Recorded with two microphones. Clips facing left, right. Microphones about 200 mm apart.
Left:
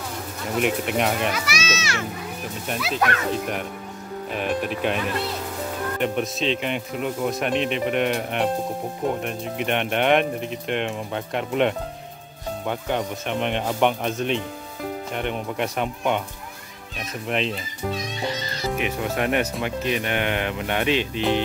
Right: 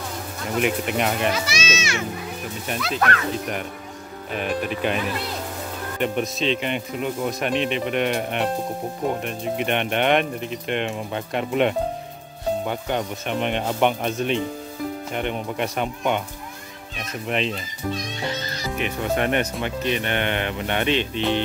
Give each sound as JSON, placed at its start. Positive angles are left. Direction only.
{"t": 0.5, "sound": "speech", "side_deg": 0}
{"t": 1.3, "sound": "a child's voice", "side_deg": -25}
{"t": 2.7, "sound": "speech", "side_deg": 0}
{"t": 4.3, "sound": "speech", "side_deg": 0}
{"t": 18.8, "sound": "speech", "side_deg": 5}